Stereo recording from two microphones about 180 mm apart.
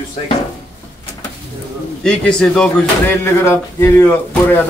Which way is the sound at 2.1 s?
5° left (ahead or behind).